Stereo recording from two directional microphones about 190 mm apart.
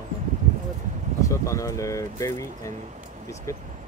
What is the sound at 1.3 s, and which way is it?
Speech, 15° left (ahead or behind).